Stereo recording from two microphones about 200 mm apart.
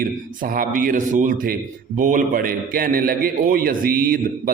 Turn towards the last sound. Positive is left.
turn(degrees=-45)  # may be behind; listen again after turning